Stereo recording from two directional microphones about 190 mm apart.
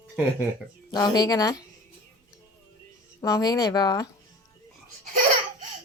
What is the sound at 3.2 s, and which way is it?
Speech, 20° left (ahead or behind).